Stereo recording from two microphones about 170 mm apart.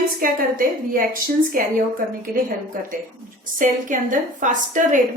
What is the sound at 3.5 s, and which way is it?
A woman's voice, 50° right (ahead or behind).